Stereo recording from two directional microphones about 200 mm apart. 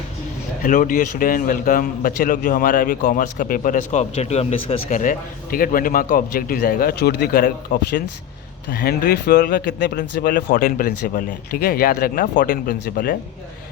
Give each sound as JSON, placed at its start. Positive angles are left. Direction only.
{"t": 0.6, "sound": "a man's voice", "side_deg": 40}